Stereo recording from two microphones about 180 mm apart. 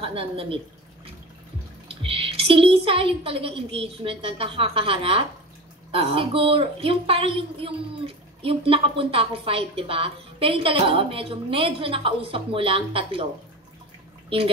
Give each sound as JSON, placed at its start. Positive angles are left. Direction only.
{"t": 0.0, "sound": "a woman's voice", "side_deg": -30}
{"t": 1.9, "sound": "a woman's voice", "side_deg": -30}